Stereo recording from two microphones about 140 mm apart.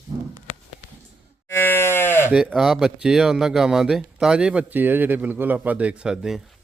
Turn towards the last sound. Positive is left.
turn(degrees=-5)  # may be behind; listen again after turning